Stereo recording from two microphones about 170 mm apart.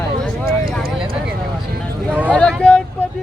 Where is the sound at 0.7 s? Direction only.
Centre (ahead or behind).